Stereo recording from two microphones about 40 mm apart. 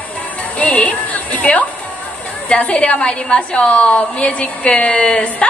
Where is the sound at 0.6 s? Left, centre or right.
Left.